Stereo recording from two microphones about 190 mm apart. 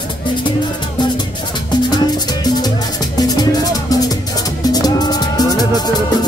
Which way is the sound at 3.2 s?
20° left (ahead or behind).